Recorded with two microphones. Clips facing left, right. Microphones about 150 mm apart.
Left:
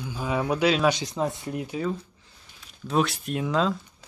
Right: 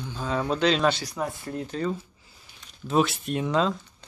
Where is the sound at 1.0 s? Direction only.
20° left (ahead or behind).